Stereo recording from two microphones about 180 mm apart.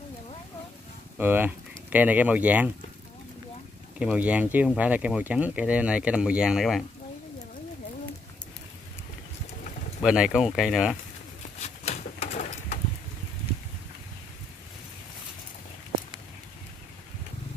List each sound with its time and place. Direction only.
1.1 s speech: 10° right (ahead or behind)
4.0 s speech: 5° right (ahead or behind)
10.0 s speech: 5° right (ahead or behind)
11.6 s pigeon: 35° left (ahead or behind)